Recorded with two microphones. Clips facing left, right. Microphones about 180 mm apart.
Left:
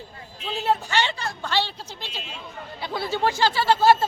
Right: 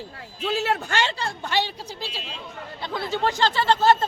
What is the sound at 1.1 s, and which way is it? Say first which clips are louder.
Speech: right 1 dB; 30° right (ahead or behind).